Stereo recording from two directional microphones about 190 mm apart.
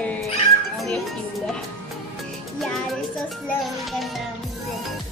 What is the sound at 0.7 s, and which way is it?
Speech, centre (ahead or behind).